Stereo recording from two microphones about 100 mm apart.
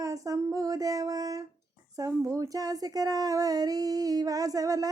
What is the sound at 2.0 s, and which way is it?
Mantra, 30° right (ahead or behind).